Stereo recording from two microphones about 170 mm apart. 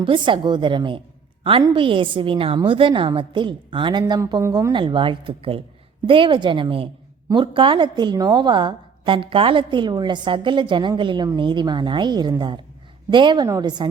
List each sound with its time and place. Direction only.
0.0 s a woman's voice: 30° right (ahead or behind)